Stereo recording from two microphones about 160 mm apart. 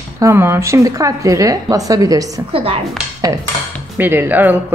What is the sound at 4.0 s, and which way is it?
Speech, 15° right (ahead or behind).